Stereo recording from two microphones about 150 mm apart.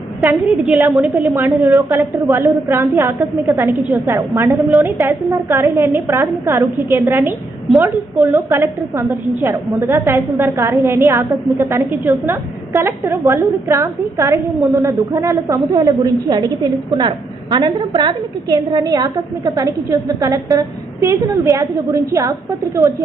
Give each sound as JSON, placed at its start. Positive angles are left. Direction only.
{"t": 0.3, "sound": "a woman's voice", "side_deg": -10}